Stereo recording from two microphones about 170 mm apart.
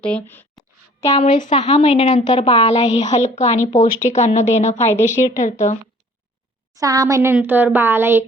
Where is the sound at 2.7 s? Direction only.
45° left (ahead or behind).